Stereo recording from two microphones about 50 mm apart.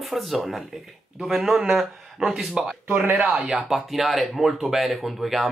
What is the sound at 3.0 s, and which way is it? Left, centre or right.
Speech, right.